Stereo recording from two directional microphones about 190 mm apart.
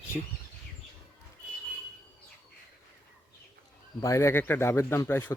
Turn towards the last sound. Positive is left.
turn(degrees=10)  # may be behind; listen again after turning